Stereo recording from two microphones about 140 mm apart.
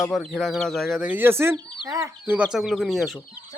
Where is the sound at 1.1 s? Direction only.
15° right (ahead or behind).